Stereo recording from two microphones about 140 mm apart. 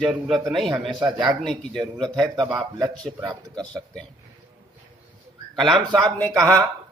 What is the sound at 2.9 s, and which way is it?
Speech, 5° left (ahead or behind).